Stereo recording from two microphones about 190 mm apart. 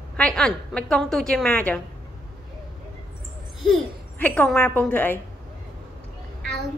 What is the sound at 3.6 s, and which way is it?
A woman's voice, 5° left (ahead or behind).